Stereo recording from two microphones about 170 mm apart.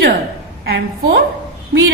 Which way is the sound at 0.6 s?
75° right (ahead or behind).